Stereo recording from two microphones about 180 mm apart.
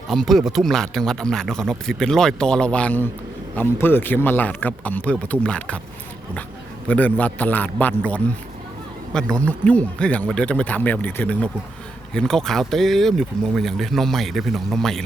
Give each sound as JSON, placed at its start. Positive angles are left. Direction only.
{"t": 0.1, "sound": "speech", "side_deg": 0}
{"t": 6.8, "sound": "speech", "side_deg": 10}